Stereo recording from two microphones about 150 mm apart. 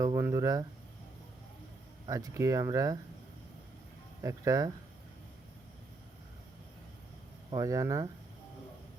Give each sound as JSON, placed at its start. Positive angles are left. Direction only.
{"t": 0.0, "sound": "speech", "side_deg": -20}
{"t": 2.0, "sound": "speech", "side_deg": -20}
{"t": 4.2, "sound": "speech", "side_deg": -20}
{"t": 7.5, "sound": "speech", "side_deg": -20}